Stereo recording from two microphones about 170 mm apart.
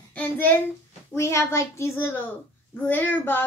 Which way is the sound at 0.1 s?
10° left (ahead or behind).